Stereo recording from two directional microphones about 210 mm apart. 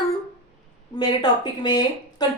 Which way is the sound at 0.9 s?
20° left (ahead or behind).